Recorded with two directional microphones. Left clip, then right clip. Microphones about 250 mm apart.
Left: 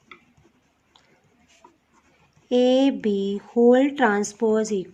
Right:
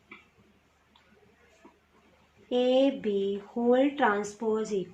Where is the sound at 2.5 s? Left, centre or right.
Left.